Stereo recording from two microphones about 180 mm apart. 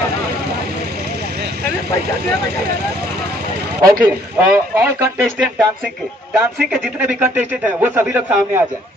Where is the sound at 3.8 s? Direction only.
20° right (ahead or behind).